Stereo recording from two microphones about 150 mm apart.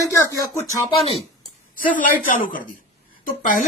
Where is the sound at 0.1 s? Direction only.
20° left (ahead or behind).